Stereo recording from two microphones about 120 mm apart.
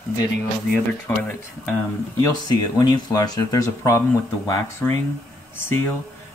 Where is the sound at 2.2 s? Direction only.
35° left (ahead or behind).